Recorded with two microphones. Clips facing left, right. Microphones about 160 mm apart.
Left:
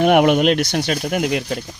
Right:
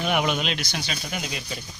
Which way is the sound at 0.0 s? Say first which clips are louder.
Left 11 dB; 60° left (ahead or behind).